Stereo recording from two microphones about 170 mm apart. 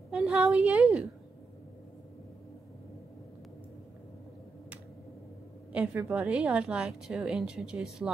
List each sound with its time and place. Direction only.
0.1 s a woman's voice: 5° right (ahead or behind)
5.7 s a woman's voice: 5° right (ahead or behind)